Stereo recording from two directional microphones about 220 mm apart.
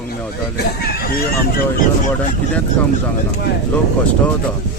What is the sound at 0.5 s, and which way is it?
Speech, 45° left (ahead or behind).